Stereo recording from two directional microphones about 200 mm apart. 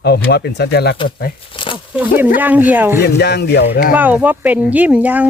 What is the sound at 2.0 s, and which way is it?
Speech, 10° right (ahead or behind).